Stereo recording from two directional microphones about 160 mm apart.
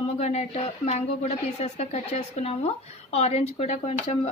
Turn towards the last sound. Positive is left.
turn(degrees=40)  # may be behind; listen again after turning